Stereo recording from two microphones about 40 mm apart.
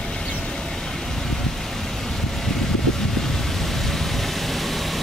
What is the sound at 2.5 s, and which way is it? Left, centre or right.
Vehicle, centre.